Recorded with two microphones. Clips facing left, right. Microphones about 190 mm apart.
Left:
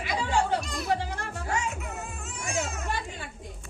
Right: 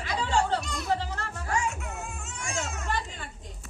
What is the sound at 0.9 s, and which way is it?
Music, 15° left (ahead or behind).